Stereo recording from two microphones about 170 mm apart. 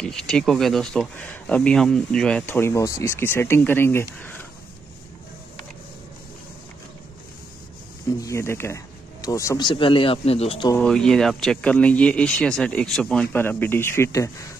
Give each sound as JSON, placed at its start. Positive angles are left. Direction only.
{"t": 0.0, "sound": "speech", "side_deg": 5}
{"t": 8.2, "sound": "speech", "side_deg": 15}
{"t": 9.7, "sound": "speech", "side_deg": 30}
{"t": 10.8, "sound": "speech", "side_deg": 5}